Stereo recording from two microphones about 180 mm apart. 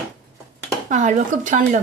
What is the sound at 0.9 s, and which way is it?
Speech, 45° right (ahead or behind).